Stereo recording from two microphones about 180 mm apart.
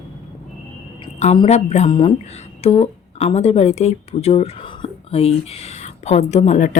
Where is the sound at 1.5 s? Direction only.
35° left (ahead or behind).